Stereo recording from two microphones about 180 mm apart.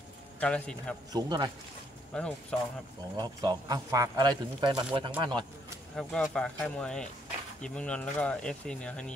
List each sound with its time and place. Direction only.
0.4 s speech: 5° left (ahead or behind)
1.1 s a man's voice: 25° right (ahead or behind)
2.1 s speech: 5° left (ahead or behind)
3.2 s a man's voice: 20° right (ahead or behind)
5.9 s speech: 5° left (ahead or behind)